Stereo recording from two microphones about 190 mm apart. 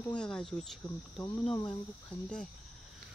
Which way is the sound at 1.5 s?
25° left (ahead or behind).